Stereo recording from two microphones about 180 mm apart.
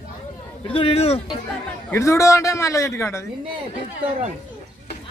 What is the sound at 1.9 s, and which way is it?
A man's voice, 15° left (ahead or behind).